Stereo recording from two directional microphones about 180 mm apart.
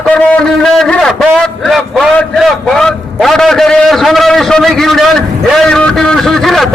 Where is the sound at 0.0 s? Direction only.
5° left (ahead or behind).